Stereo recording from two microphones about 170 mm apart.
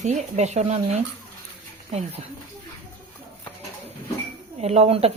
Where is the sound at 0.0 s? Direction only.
45° right (ahead or behind).